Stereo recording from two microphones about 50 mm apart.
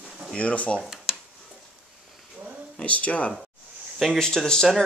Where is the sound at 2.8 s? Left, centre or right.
Left.